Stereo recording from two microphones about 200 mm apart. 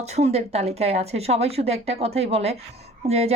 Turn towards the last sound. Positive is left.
turn(degrees=-30)  # may be behind; listen again after turning